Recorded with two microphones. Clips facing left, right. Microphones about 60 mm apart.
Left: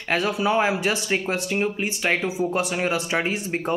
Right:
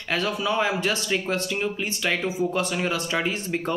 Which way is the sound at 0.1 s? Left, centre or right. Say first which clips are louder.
Left 3 dB; left.